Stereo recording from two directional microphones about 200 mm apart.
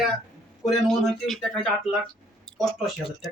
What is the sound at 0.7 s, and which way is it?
Speech, centre (ahead or behind).